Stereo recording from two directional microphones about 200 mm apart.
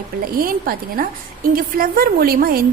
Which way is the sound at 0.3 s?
45° right (ahead or behind).